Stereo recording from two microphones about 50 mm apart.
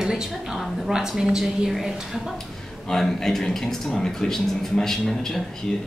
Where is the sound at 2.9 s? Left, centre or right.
Centre.